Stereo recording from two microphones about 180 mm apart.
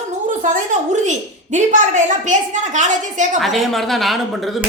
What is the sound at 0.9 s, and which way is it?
A woman's voice, 40° right (ahead or behind).